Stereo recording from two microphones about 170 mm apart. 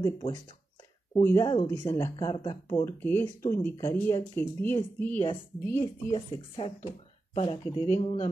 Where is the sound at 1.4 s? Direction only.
25° left (ahead or behind); by 5.2 s 10° left (ahead or behind).